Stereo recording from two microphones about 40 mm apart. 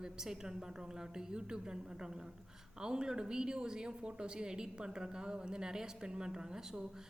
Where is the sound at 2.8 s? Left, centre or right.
Centre.